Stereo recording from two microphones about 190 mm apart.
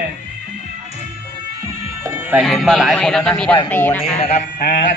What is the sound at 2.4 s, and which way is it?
A man's voice, centre (ahead or behind).